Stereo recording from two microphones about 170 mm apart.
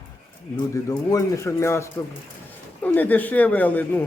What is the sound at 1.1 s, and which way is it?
Speech, 20° left (ahead or behind).